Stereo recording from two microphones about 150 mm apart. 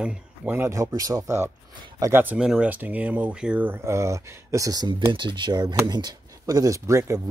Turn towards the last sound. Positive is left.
turn(degrees=-20)  # may be behind; listen again after turning